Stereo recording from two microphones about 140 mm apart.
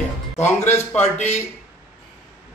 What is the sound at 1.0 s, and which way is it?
Speech, 50° left (ahead or behind).